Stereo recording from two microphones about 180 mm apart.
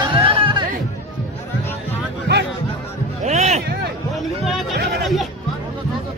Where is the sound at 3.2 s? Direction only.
40° right (ahead or behind).